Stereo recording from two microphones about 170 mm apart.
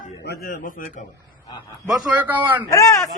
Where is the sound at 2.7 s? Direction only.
20° left (ahead or behind).